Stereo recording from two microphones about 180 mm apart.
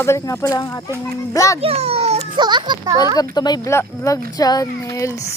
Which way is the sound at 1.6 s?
35° right (ahead or behind).